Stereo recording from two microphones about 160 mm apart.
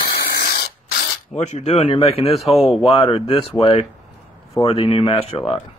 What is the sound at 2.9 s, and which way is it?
Speech, 35° left (ahead or behind).